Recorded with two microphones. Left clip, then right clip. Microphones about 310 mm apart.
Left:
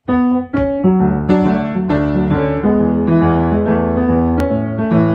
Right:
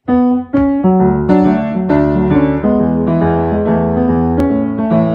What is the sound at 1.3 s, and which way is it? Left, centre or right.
Music, right.